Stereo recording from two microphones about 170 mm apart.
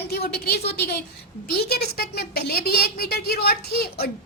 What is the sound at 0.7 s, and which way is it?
A woman's voice, 70° left (ahead or behind).